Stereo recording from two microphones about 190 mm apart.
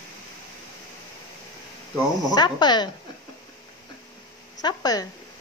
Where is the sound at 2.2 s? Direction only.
20° left (ahead or behind).